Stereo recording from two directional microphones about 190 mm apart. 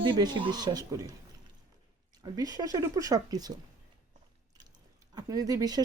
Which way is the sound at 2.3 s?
20° right (ahead or behind).